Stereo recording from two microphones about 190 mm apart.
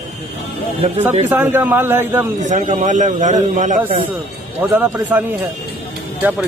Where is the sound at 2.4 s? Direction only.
40° right (ahead or behind).